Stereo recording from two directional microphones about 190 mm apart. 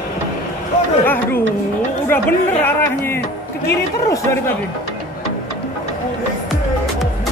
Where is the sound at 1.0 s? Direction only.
10° left (ahead or behind).